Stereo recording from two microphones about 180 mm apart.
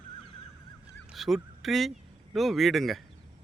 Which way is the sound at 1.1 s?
Centre (ahead or behind).